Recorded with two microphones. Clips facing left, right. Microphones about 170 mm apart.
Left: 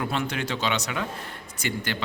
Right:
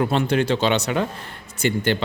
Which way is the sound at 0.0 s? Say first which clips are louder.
Right 8 dB; 30° right (ahead or behind).